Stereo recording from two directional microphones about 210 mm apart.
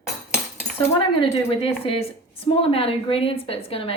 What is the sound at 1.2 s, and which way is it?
Speech, 25° left (ahead or behind).